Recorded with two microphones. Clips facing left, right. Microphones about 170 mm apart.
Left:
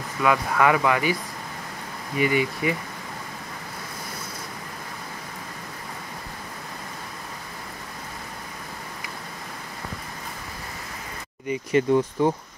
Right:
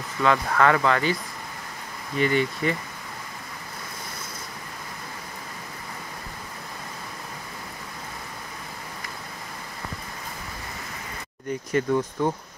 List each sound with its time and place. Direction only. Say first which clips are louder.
0.2 s speech: even; 10° left (ahead or behind)
2.1 s speech: even; 10° left (ahead or behind)
11.4 s speech: left 3 dB; 15° left (ahead or behind)